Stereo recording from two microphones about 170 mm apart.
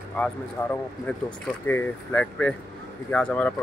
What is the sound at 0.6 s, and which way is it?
Speech, 15° left (ahead or behind).